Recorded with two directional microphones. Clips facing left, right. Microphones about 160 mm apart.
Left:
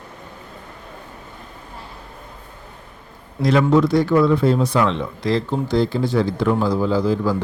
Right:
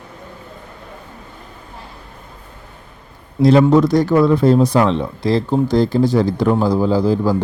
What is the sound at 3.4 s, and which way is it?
Speech, 35° right (ahead or behind).